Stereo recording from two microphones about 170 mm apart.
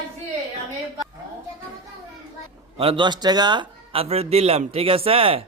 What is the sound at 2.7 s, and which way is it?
A man's voice, 30° right (ahead or behind).